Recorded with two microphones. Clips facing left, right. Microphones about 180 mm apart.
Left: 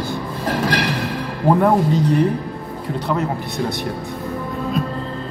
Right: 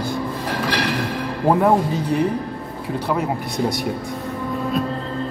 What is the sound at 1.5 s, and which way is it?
Speech, 5° right (ahead or behind).